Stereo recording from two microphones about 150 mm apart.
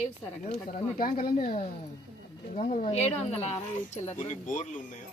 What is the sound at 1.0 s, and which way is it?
Speech, 70° left (ahead or behind).